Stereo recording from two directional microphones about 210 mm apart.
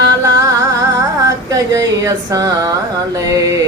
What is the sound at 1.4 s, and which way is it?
Music, 15° right (ahead or behind).